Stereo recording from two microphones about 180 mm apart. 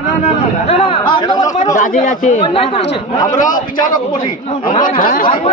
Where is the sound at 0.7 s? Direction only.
30° left (ahead or behind).